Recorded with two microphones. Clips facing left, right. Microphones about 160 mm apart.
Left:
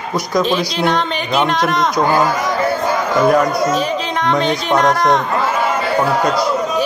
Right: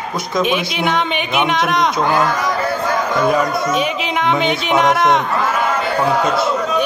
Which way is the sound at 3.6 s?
30° left (ahead or behind).